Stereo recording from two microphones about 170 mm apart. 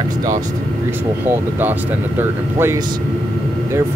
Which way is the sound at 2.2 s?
15° right (ahead or behind).